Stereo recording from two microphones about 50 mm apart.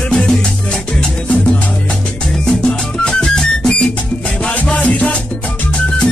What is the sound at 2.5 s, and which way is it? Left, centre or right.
Music, centre.